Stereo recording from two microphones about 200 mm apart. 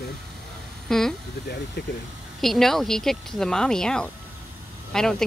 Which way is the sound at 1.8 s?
55° left (ahead or behind).